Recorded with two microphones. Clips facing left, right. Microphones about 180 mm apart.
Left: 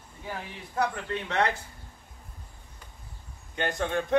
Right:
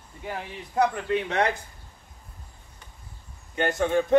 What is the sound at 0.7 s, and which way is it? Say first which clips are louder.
Speech: right 6 dB; 15° right (ahead or behind).